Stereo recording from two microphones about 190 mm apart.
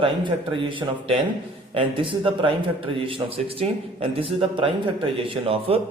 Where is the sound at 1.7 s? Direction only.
25° right (ahead or behind).